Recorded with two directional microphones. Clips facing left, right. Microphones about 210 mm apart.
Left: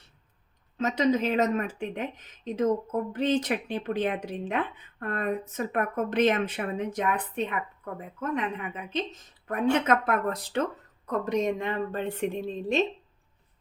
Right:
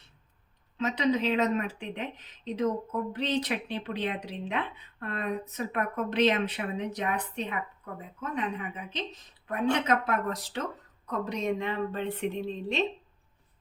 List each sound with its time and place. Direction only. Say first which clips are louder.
0.8 s speech: left 2 dB; 45° left (ahead or behind)
9.5 s speech: left 3 dB; 50° left (ahead or behind)